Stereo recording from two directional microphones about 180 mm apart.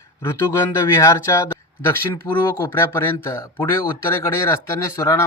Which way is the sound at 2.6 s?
15° left (ahead or behind).